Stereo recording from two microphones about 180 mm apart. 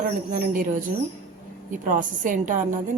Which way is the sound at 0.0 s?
55° right (ahead or behind).